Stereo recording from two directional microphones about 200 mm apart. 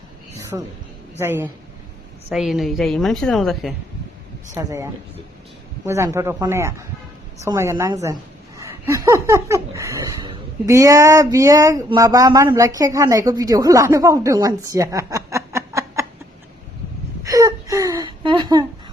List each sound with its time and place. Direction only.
0.5 s a woman's voice: 10° right (ahead or behind)
4.5 s speech: 15° right (ahead or behind)
17.2 s a sound: 15° right (ahead or behind)